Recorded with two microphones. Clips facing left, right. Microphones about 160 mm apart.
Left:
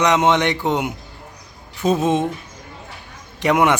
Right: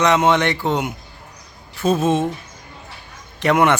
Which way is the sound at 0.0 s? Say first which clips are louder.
Even; 15° left (ahead or behind).